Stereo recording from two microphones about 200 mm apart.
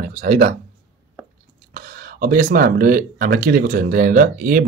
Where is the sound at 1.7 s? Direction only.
45° right (ahead or behind).